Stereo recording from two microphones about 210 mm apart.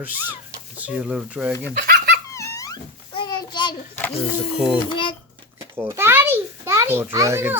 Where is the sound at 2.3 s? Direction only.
15° left (ahead or behind).